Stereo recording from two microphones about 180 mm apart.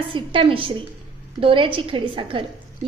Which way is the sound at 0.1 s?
30° right (ahead or behind).